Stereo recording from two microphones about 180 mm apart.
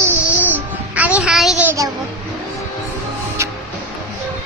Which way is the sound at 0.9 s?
10° right (ahead or behind).